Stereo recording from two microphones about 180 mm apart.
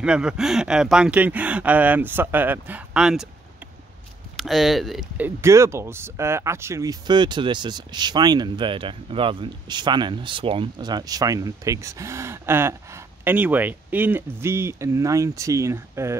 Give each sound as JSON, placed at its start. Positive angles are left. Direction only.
{"t": 0.0, "sound": "speech", "side_deg": -5}
{"t": 4.4, "sound": "speech", "side_deg": 0}